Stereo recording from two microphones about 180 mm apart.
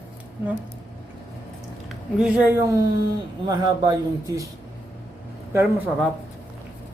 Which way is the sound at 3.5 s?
20° right (ahead or behind).